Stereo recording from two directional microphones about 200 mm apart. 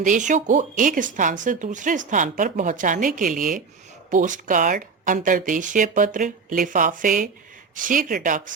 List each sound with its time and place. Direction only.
0.0 s speech: 40° right (ahead or behind)